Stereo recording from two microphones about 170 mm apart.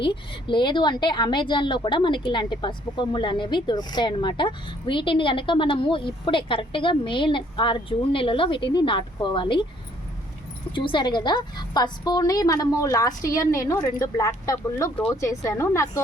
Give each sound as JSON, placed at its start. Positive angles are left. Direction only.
{"t": 0.0, "sound": "a woman's voice", "side_deg": 30}
{"t": 10.8, "sound": "a woman's voice", "side_deg": 30}